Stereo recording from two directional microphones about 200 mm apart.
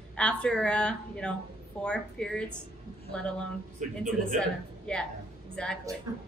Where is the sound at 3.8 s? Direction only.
35° right (ahead or behind).